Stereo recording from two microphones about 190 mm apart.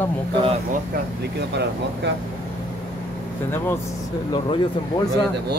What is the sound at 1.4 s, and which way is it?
Speech, 60° right (ahead or behind).